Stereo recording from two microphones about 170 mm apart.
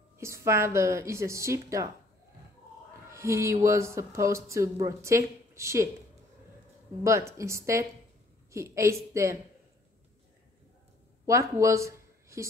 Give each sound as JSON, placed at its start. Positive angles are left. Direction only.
{"t": 0.2, "sound": "speech", "side_deg": -15}
{"t": 3.1, "sound": "speech", "side_deg": -15}
{"t": 7.0, "sound": "a woman's voice", "side_deg": -15}
{"t": 11.2, "sound": "speech", "side_deg": -20}